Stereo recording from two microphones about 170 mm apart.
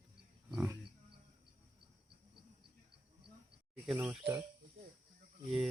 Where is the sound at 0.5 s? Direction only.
15° right (ahead or behind).